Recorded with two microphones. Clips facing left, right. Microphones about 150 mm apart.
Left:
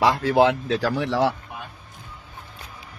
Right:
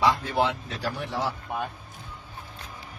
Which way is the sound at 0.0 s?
75° left (ahead or behind).